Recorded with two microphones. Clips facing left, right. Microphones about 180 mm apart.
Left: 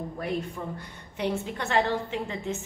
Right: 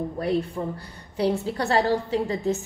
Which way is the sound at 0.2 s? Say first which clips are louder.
Right 6 dB; 35° right (ahead or behind).